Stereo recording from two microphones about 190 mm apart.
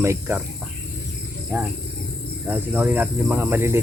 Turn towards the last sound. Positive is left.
turn(degrees=-10)  # may be behind; listen again after turning